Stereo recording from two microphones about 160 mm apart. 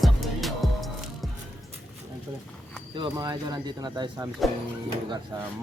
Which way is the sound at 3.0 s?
25° right (ahead or behind).